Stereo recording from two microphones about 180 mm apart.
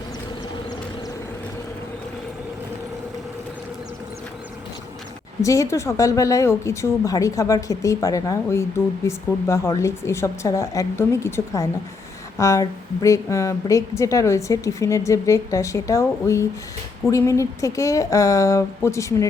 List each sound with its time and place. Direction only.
5.4 s a woman's voice: 15° left (ahead or behind)